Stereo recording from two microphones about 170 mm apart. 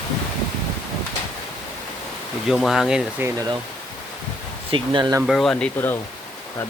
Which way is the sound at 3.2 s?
15° right (ahead or behind).